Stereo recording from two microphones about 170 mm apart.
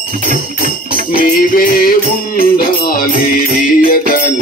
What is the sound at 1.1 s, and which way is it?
Mantra, 60° left (ahead or behind).